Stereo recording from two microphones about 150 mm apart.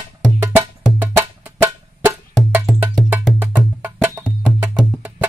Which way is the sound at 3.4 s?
15° right (ahead or behind).